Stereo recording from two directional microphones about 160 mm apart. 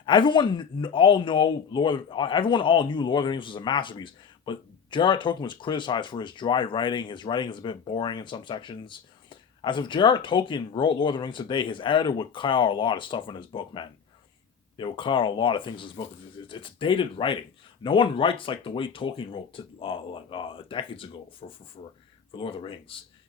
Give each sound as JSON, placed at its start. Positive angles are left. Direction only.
{"t": 0.0, "sound": "speech", "side_deg": 30}